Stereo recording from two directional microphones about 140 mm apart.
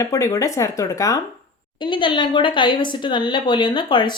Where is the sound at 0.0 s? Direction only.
20° left (ahead or behind).